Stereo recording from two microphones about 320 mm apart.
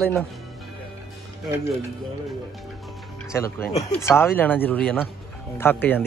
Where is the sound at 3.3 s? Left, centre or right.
Centre.